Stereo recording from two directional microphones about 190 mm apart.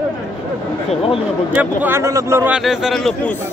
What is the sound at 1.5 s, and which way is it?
A man's voice, 10° right (ahead or behind).